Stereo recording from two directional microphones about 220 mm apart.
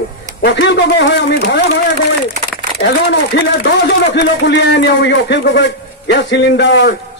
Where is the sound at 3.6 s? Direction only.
50° left (ahead or behind).